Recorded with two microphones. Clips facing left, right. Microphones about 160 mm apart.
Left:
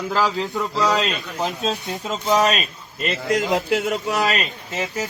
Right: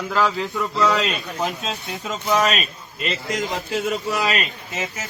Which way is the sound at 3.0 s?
55° left (ahead or behind).